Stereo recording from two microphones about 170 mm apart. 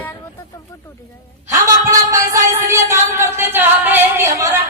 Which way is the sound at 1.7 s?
20° right (ahead or behind).